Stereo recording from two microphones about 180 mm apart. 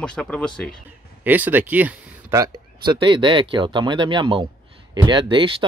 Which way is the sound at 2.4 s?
25° right (ahead or behind).